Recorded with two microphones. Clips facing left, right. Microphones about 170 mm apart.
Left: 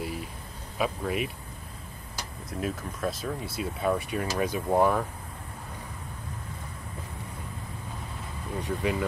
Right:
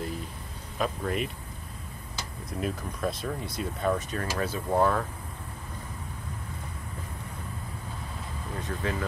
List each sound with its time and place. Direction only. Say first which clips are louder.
0.7 s speech: left 1 dB; 5° left (ahead or behind)
2.5 s speech: even; centre (ahead or behind)
8.5 s speech: left 4 dB; 15° left (ahead or behind)